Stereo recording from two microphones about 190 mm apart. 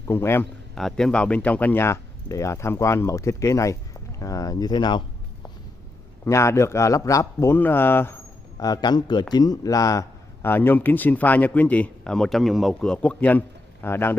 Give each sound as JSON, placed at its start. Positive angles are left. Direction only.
{"t": 0.1, "sound": "a man's voice", "side_deg": 10}
{"t": 6.2, "sound": "a man's voice", "side_deg": 15}